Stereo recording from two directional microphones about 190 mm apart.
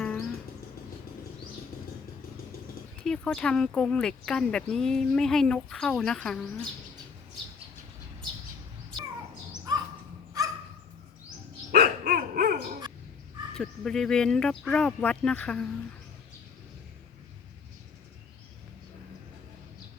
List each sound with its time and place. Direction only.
0.0 s music: 5° left (ahead or behind)
3.0 s speech: 5° left (ahead or behind)
9.7 s crow: 20° right (ahead or behind)
10.4 s dog: 20° right (ahead or behind)
11.7 s dog: 50° right (ahead or behind)
13.5 s speech: 5° left (ahead or behind)